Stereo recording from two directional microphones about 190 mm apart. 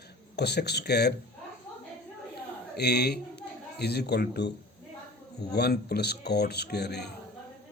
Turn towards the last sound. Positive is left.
turn(degrees=60)  # may be behind; listen again after turning